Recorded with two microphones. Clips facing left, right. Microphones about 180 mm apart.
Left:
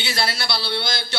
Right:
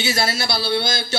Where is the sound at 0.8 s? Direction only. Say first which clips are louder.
Right 4 dB; 25° right (ahead or behind).